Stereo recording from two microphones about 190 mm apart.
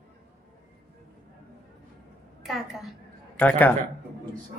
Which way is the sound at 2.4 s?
Centre (ahead or behind).